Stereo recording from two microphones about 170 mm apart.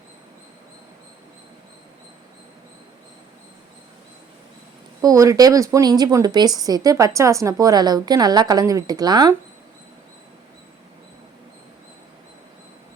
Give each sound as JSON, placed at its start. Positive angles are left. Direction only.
{"t": 4.9, "sound": "a woman's voice", "side_deg": -20}